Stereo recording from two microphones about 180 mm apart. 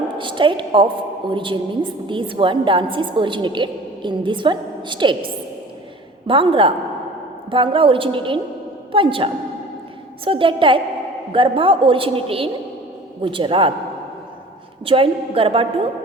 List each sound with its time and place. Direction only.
0.2 s a woman's voice: 25° right (ahead or behind)
14.8 s a woman's voice: 30° right (ahead or behind)